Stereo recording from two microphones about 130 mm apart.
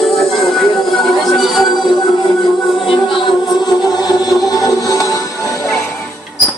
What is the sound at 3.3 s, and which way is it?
Music, 35° left (ahead or behind).